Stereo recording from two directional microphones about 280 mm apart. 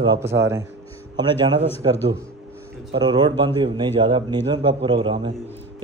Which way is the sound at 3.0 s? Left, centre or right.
Centre.